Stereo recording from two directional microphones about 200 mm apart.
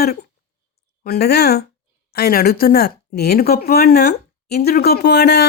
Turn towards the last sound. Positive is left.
turn(degrees=55)  # may be behind; listen again after turning